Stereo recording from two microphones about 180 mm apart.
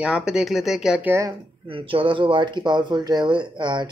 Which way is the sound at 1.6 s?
30° right (ahead or behind).